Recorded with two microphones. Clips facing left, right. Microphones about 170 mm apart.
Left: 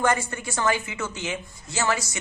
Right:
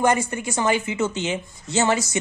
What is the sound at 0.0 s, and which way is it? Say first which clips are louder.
Speech: right 4 dB; 20° right (ahead or behind).